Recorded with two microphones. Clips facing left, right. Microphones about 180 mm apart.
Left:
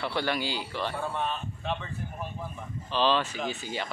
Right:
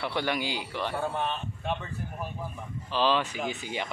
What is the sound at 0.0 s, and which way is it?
Speech, 15° right (ahead or behind).